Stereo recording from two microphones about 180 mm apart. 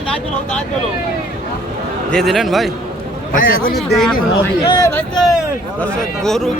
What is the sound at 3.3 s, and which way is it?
Speech, 55° left (ahead or behind).